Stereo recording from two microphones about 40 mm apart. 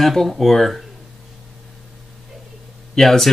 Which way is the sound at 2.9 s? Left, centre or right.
Centre.